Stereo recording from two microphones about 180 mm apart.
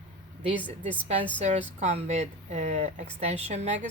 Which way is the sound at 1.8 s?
40° right (ahead or behind).